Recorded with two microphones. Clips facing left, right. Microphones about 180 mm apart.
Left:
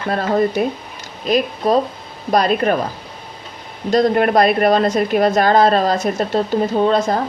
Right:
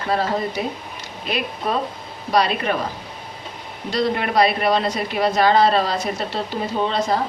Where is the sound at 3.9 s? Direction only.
45° left (ahead or behind).